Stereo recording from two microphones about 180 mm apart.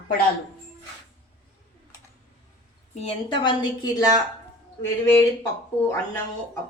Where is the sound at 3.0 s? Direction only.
30° left (ahead or behind).